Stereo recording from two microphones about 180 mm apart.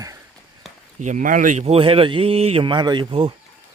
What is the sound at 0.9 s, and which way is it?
Speech, 45° right (ahead or behind).